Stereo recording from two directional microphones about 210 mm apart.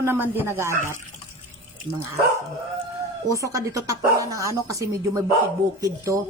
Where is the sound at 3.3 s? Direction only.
15° right (ahead or behind).